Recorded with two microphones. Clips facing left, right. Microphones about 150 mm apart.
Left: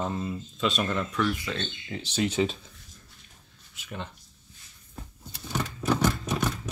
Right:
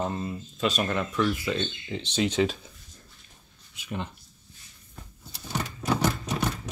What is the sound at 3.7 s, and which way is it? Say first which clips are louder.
Speech: right 4 dB; 15° right (ahead or behind).